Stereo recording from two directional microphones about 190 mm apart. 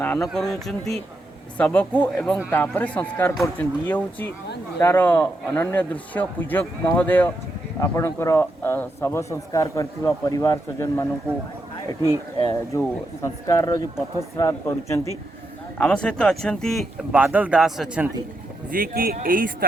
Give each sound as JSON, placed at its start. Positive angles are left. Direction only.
{"t": 0.0, "sound": "speech", "side_deg": 5}
{"t": 12.4, "sound": "speech", "side_deg": 20}
{"t": 15.8, "sound": "speech", "side_deg": 5}
{"t": 18.7, "sound": "speech", "side_deg": -50}